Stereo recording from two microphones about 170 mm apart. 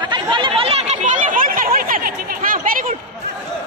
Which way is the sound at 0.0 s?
30° right (ahead or behind).